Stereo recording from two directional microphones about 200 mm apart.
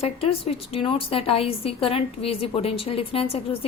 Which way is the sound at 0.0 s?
30° left (ahead or behind).